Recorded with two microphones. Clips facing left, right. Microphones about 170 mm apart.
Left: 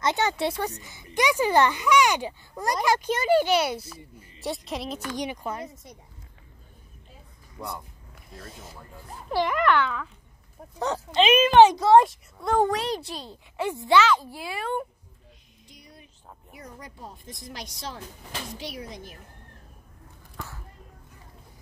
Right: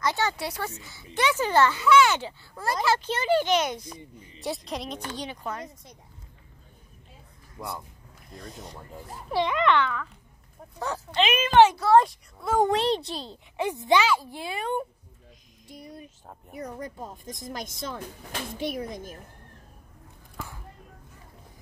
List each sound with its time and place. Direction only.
0.0 s a child's voice: 20° left (ahead or behind)
7.6 s speech: 10° right (ahead or behind)
8.3 s a child's voice: centre (ahead or behind)
11.1 s a child's voice: 20° left (ahead or behind)
12.0 s a child's voice: centre (ahead or behind)
12.5 s speech: 25° right (ahead or behind)
14.3 s speech: 20° right (ahead or behind)
15.7 s speech: 45° right (ahead or behind)
20.3 s a sound: 15° right (ahead or behind)